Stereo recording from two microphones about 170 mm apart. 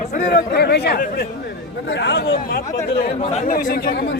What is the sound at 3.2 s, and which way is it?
Speech, 40° left (ahead or behind).